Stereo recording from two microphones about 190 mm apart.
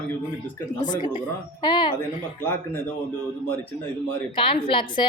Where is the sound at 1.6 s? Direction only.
25° left (ahead or behind).